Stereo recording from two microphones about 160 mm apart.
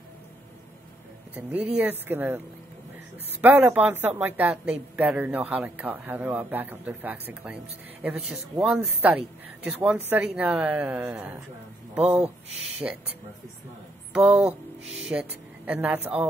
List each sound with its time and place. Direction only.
1.3 s a woman's voice: 10° right (ahead or behind)
12.0 s speech: 40° right (ahead or behind)
14.1 s a woman's voice: 5° right (ahead or behind)